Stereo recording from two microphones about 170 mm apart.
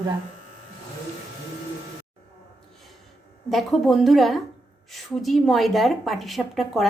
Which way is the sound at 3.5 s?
Centre (ahead or behind).